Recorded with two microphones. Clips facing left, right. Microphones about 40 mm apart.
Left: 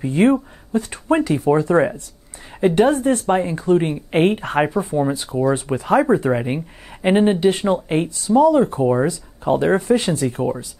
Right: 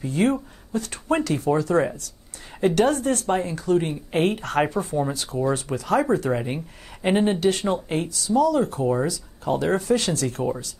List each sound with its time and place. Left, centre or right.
0.0 s speech: left